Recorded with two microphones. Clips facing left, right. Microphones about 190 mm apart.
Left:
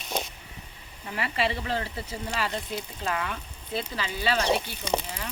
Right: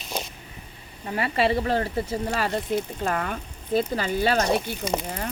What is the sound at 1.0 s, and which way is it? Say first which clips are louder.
Speech: right 5 dB; 40° right (ahead or behind).